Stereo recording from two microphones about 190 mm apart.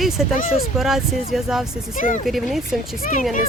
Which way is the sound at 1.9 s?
45° left (ahead or behind).